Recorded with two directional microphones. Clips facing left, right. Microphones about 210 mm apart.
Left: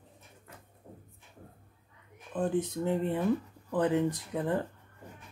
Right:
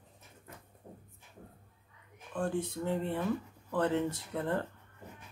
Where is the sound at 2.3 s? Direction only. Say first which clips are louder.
Left 4 dB; 20° left (ahead or behind).